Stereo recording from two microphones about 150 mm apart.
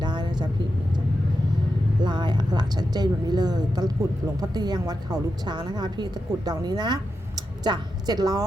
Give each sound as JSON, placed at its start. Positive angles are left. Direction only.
{"t": 0.0, "sound": "vehicle", "side_deg": -30}
{"t": 2.0, "sound": "a woman's voice", "side_deg": -30}